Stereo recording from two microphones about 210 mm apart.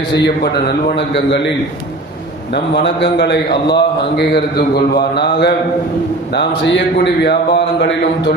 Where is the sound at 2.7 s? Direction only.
55° left (ahead or behind).